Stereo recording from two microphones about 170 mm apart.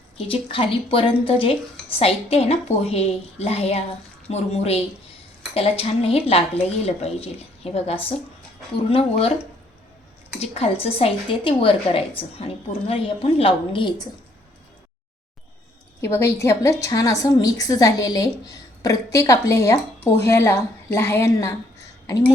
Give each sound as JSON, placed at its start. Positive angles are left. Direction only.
{"t": 0.2, "sound": "a woman's voice", "side_deg": 35}
{"t": 10.4, "sound": "a woman's voice", "side_deg": 35}
{"t": 16.0, "sound": "a woman's voice", "side_deg": 15}